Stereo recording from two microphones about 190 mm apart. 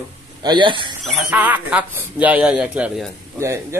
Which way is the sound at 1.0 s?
5° right (ahead or behind).